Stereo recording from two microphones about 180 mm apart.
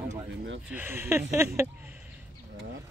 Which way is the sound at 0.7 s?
10° right (ahead or behind).